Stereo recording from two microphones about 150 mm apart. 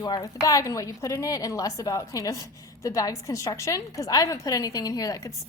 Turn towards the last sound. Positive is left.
turn(degrees=25)  # may be behind; listen again after turning